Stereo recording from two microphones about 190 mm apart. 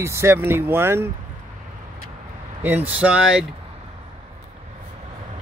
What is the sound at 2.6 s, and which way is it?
Speech, 10° right (ahead or behind).